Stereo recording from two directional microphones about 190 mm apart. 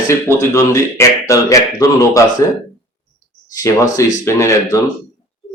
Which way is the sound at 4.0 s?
15° left (ahead or behind).